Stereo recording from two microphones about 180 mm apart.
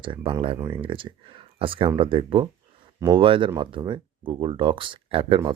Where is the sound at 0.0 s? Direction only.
30° right (ahead or behind).